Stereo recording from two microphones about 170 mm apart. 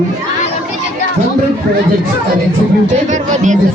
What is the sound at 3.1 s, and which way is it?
Speech, 45° right (ahead or behind).